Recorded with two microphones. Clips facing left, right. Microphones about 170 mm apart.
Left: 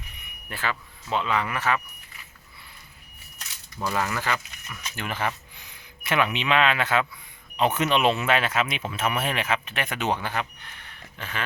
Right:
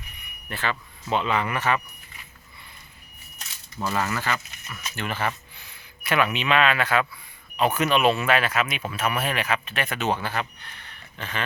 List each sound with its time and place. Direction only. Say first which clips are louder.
0.4 s speech: right 1 dB; 10° left (ahead or behind)
3.9 s speech: even; 10° left (ahead or behind)